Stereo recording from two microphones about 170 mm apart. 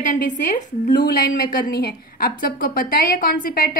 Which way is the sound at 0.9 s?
75° left (ahead or behind).